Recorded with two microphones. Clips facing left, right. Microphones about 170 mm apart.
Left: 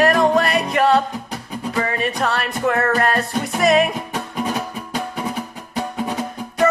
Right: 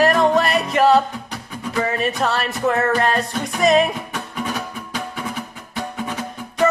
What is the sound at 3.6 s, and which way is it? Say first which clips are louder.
Music: even; centre (ahead or behind).